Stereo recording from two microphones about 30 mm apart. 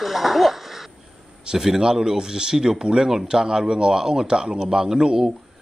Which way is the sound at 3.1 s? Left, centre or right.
Centre.